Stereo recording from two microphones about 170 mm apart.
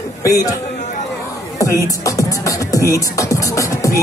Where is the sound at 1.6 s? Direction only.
20° left (ahead or behind).